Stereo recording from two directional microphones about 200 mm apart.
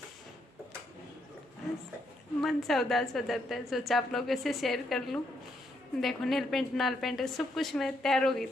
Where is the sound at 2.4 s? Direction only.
Centre (ahead or behind).